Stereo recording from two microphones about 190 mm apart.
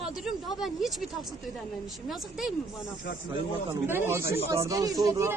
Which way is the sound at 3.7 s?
10° right (ahead or behind).